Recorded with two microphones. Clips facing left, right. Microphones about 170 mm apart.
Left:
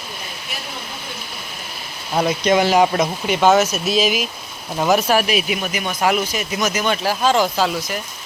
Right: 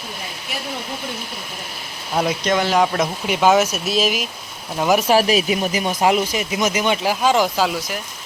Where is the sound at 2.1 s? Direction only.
Centre (ahead or behind).